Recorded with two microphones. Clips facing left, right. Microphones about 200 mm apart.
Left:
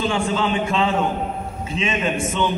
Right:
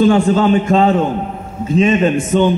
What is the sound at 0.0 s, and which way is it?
A man's voice, 45° right (ahead or behind).